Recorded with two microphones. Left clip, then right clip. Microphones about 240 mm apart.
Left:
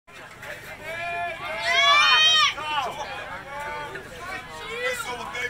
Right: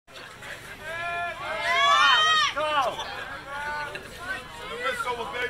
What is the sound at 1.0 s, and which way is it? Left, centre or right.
Run, left.